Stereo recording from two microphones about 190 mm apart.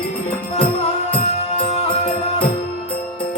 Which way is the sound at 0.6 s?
30° left (ahead or behind).